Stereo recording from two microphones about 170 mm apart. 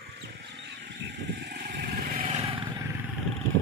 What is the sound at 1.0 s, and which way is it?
Vehicle, 90° right.